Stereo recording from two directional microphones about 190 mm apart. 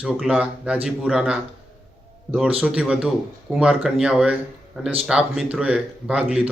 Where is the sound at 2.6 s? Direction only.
5° right (ahead or behind).